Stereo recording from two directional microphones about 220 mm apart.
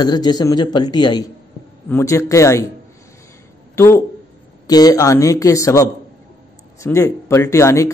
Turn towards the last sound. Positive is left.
turn(degrees=15)  # may be behind; listen again after turning